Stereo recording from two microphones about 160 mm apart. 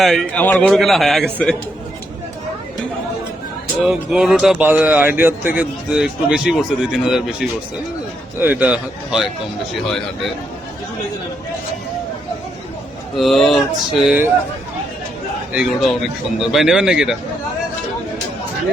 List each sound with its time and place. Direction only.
0.0 s speech: centre (ahead or behind)
3.8 s a man's voice: 5° right (ahead or behind)
13.1 s speech: centre (ahead or behind)
15.5 s speech: centre (ahead or behind)